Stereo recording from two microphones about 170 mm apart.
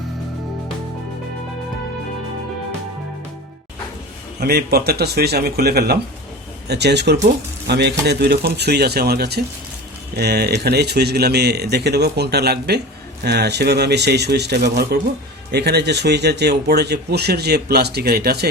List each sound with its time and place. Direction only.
4.4 s speech: 70° right (ahead or behind)